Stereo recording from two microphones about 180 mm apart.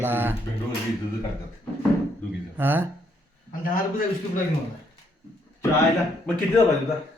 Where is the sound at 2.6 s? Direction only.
10° right (ahead or behind).